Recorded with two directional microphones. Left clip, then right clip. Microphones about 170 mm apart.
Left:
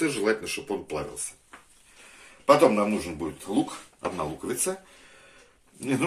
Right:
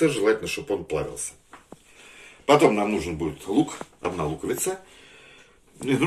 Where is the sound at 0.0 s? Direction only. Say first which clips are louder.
Right 5 dB; 55° left (ahead or behind).